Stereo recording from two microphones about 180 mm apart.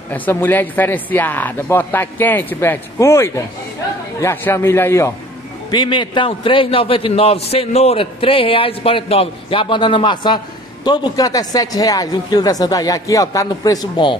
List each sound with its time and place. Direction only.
0.1 s speech: 10° left (ahead or behind)
5.7 s a man's voice: 25° left (ahead or behind)